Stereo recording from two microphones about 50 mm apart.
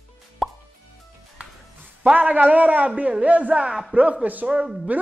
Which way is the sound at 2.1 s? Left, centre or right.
Right.